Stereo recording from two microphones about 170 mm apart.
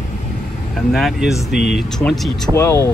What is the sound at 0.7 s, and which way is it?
Speech, centre (ahead or behind).